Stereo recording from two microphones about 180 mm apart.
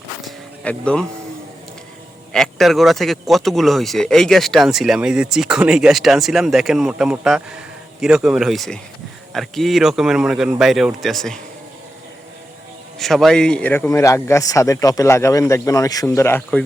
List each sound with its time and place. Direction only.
0.3 s a sound: 5° left (ahead or behind)
2.3 s speech: centre (ahead or behind)
13.0 s a man's voice: centre (ahead or behind)